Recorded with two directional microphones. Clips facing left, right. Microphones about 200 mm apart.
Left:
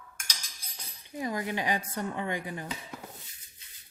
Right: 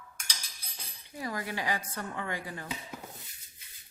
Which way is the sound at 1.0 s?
20° left (ahead or behind).